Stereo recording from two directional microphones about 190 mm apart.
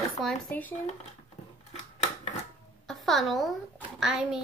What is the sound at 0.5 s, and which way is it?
Speech, 10° left (ahead or behind).